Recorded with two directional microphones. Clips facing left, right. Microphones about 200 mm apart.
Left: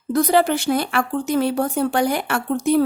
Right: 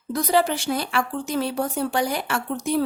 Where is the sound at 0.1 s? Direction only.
55° left (ahead or behind).